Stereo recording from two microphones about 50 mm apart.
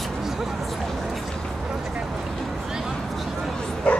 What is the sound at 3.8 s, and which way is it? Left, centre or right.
Dog, left.